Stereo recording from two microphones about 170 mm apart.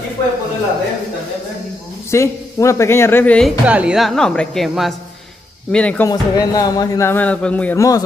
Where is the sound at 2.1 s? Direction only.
15° left (ahead or behind).